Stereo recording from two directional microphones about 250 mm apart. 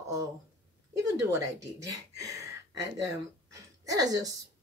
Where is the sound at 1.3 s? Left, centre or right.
Centre.